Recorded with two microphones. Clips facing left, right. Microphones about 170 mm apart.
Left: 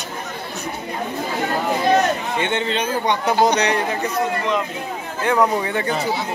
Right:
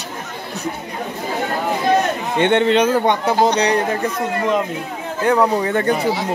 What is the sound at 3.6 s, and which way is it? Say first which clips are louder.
Speech: right 3 dB; 40° right (ahead or behind).